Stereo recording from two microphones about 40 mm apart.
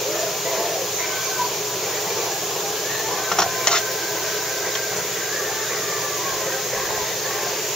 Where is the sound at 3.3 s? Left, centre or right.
Centre.